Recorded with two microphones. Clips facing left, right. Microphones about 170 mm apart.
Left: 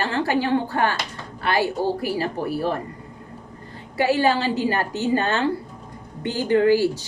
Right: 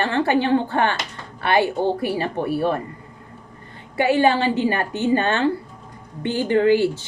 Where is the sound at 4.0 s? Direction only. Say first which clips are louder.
Right 2 dB; 20° right (ahead or behind).